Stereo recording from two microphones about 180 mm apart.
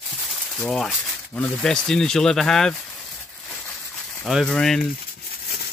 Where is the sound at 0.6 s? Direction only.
5° left (ahead or behind).